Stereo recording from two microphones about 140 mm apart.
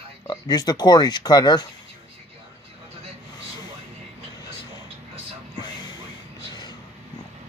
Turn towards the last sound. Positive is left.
turn(degrees=30)  # may be behind; listen again after turning